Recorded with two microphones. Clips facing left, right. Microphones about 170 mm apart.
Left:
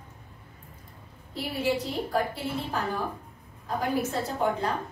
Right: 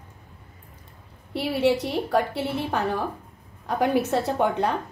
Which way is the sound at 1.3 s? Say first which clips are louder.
Right 6 dB; 70° right (ahead or behind).